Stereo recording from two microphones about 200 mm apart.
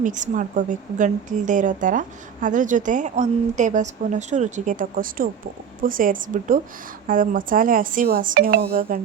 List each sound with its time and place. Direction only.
0.0 s speech: 40° right (ahead or behind)